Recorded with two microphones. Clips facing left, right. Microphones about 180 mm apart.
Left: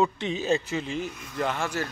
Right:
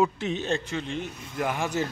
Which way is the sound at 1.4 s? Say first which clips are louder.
Right 1 dB; 15° right (ahead or behind).